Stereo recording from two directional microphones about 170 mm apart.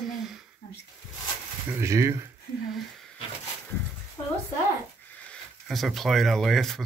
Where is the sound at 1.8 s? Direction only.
15° right (ahead or behind).